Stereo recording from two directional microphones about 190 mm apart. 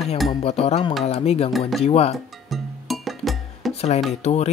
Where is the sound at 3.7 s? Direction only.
35° left (ahead or behind).